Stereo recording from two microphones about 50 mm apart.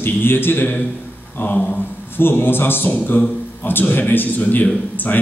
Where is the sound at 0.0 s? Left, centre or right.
Left.